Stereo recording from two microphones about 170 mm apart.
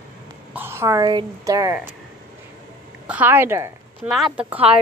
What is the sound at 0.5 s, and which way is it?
Speech, 10° right (ahead or behind).